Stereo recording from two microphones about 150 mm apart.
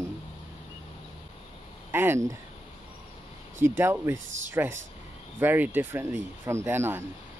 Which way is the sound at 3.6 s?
15° right (ahead or behind).